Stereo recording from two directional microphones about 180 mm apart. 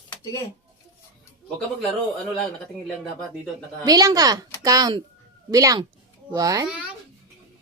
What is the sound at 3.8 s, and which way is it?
A woman's voice, 20° right (ahead or behind).